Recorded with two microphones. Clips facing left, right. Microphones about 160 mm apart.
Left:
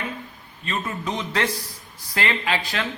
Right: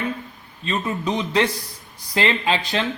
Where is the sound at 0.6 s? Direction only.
20° right (ahead or behind).